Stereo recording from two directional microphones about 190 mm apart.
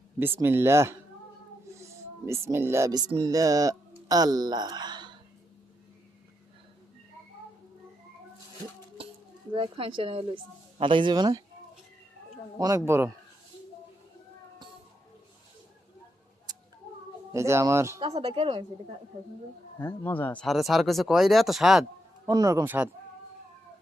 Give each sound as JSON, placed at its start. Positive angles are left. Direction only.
{"t": 0.2, "sound": "speech", "side_deg": -10}
{"t": 9.5, "sound": "speech", "side_deg": -30}
{"t": 12.5, "sound": "speech", "side_deg": -20}
{"t": 17.3, "sound": "speech", "side_deg": -15}
{"t": 18.0, "sound": "speech", "side_deg": -30}
{"t": 19.8, "sound": "speech", "side_deg": 10}
{"t": 20.4, "sound": "speech", "side_deg": 0}
{"t": 22.3, "sound": "speech", "side_deg": -20}